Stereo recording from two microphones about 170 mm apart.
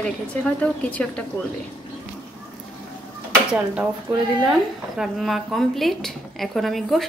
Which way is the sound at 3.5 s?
5° right (ahead or behind).